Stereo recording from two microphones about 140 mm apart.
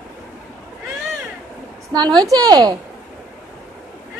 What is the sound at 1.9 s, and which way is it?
Speech, 30° right (ahead or behind).